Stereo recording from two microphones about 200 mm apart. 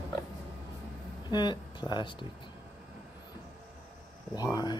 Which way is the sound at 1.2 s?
20° left (ahead or behind).